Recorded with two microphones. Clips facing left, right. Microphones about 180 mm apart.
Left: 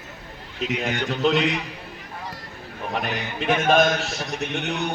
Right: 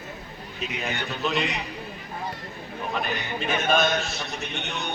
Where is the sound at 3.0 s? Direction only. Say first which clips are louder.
Left 2 dB; 65° left (ahead or behind).